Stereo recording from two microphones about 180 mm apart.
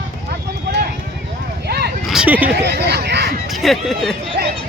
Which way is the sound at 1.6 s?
65° right (ahead or behind).